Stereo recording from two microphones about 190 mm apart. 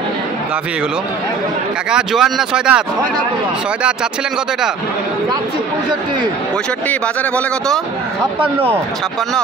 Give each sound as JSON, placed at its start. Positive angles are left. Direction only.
{"t": 1.9, "sound": "speech", "side_deg": -5}
{"t": 6.9, "sound": "speech", "side_deg": 5}
{"t": 8.4, "sound": "speech", "side_deg": -30}